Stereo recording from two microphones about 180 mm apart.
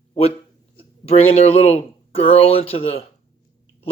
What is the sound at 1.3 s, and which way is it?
Speech, 35° left (ahead or behind).